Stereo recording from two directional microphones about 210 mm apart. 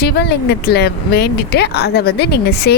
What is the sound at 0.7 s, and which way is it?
A woman's voice, 50° left (ahead or behind).